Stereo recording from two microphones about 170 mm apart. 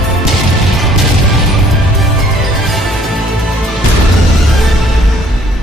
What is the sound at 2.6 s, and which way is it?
Music, centre (ahead or behind).